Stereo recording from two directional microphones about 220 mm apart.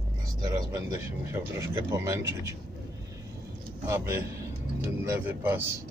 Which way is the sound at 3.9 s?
10° right (ahead or behind).